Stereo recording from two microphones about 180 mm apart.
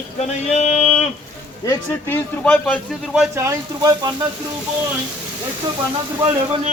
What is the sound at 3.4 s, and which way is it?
Speech, 20° right (ahead or behind).